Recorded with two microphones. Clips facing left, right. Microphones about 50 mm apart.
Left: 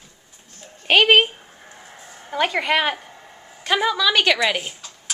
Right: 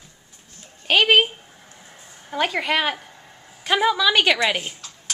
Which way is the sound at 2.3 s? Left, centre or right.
Centre.